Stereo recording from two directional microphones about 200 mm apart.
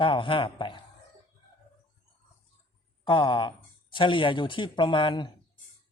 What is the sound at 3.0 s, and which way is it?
Speech, 25° left (ahead or behind).